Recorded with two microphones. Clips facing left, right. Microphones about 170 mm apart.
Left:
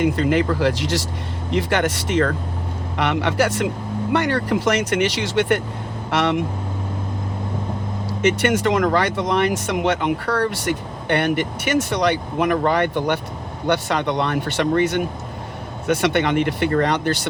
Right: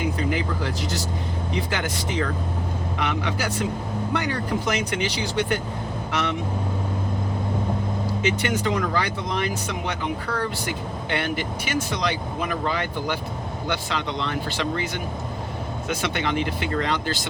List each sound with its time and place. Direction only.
0.0 s speech: 75° left (ahead or behind)
6.1 s speech: 70° left (ahead or behind)
8.4 s speech: 70° left (ahead or behind)